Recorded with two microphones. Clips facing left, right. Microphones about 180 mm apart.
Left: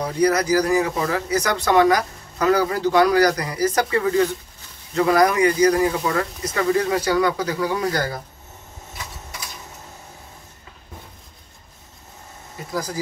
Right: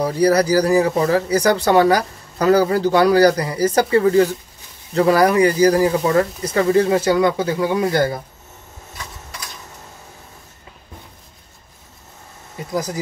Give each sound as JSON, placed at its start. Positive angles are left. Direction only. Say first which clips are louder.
{"t": 0.0, "sound": "speech", "louder": "right 4 dB", "side_deg": -35}
{"t": 12.7, "sound": "speech", "louder": "right 3 dB", "side_deg": -20}